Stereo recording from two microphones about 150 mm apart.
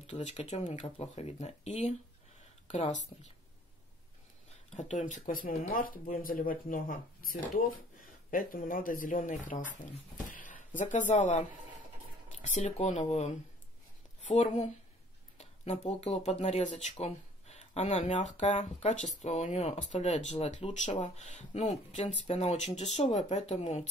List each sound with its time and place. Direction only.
0.0 s speech: 45° left (ahead or behind)
4.7 s speech: 55° left (ahead or behind)